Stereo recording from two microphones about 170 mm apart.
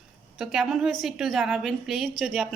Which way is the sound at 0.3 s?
Centre (ahead or behind).